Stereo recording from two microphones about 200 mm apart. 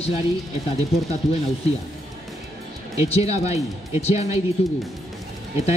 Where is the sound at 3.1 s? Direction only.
30° left (ahead or behind).